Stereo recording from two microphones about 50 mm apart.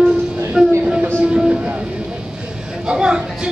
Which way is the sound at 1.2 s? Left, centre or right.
Right.